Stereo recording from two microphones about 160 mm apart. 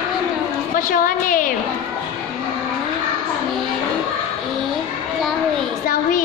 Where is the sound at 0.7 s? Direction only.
60° left (ahead or behind).